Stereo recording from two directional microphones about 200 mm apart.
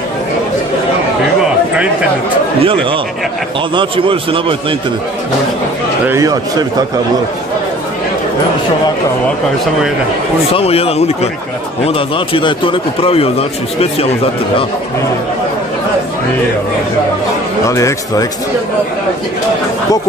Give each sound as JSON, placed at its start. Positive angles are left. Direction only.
{"t": 2.6, "sound": "a man's voice", "side_deg": -25}
{"t": 6.0, "sound": "a man's voice", "side_deg": -15}
{"t": 10.5, "sound": "a man's voice", "side_deg": 30}
{"t": 17.6, "sound": "speech", "side_deg": 15}